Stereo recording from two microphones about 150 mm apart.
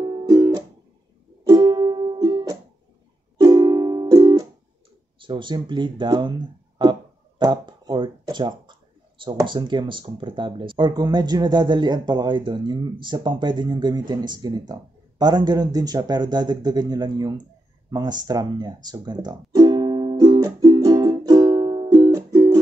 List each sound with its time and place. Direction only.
0.0 s music: 30° right (ahead or behind)
5.2 s speech: 30° right (ahead or behind)
17.8 s music: 25° right (ahead or behind)